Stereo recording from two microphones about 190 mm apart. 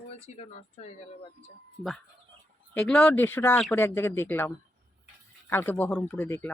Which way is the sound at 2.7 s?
5° left (ahead or behind).